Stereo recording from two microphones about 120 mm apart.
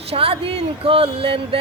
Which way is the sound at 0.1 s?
50° right (ahead or behind).